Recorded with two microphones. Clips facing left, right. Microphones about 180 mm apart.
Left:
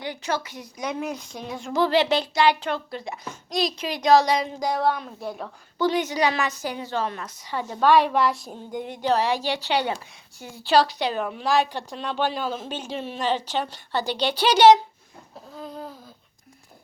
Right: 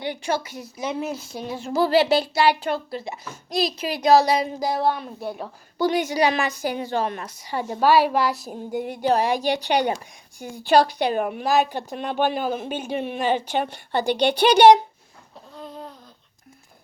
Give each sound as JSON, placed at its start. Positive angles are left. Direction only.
{"t": 0.3, "sound": "a child's voice", "side_deg": -10}
{"t": 0.8, "sound": "speech", "side_deg": -25}
{"t": 1.1, "sound": "a child's voice", "side_deg": -5}
{"t": 9.6, "sound": "a woman's voice", "side_deg": -45}
{"t": 15.5, "sound": "a sound", "side_deg": 0}